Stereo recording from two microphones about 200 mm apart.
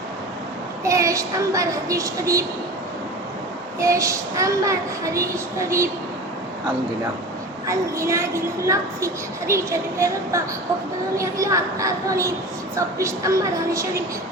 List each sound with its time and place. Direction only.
0.9 s a child's voice: 15° right (ahead or behind)
3.8 s a child's voice: 15° right (ahead or behind)
7.7 s a child's voice: 15° right (ahead or behind)